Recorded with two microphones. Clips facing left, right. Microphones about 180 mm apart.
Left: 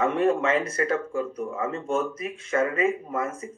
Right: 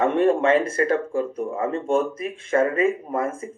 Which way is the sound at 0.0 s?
30° right (ahead or behind).